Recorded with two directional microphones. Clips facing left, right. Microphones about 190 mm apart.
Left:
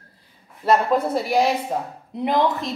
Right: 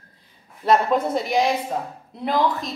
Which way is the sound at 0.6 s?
5° left (ahead or behind).